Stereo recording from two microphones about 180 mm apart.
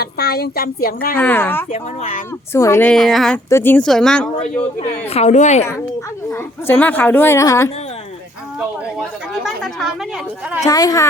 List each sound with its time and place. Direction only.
0.0 s a woman's voice: 60° left (ahead or behind)
1.1 s a woman's voice: 10° left (ahead or behind)
1.7 s speech: 40° left (ahead or behind)
2.5 s a woman's voice: 15° left (ahead or behind)
2.9 s a woman's voice: centre (ahead or behind)
5.0 s speech: 35° left (ahead or behind)
6.3 s a woman's voice: 10° left (ahead or behind)
8.5 s speech: centre (ahead or behind)
10.7 s a woman's voice: 20° left (ahead or behind)